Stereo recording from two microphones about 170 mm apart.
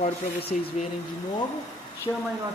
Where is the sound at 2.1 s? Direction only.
20° left (ahead or behind).